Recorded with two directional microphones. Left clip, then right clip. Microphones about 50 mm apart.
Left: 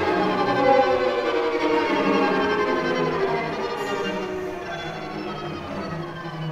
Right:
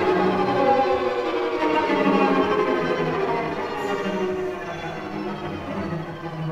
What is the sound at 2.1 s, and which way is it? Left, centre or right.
Music, left.